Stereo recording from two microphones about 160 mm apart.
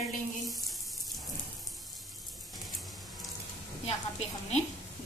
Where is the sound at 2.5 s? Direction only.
Centre (ahead or behind).